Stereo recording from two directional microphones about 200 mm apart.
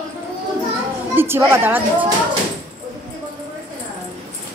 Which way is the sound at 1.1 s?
10° right (ahead or behind).